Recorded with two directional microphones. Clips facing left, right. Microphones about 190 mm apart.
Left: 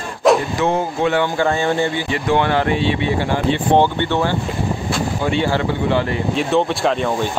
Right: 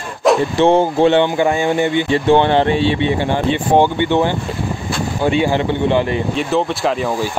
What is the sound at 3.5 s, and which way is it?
Speech, 15° right (ahead or behind).